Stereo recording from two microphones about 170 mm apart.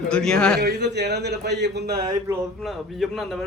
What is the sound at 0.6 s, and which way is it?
A man's voice, 80° right.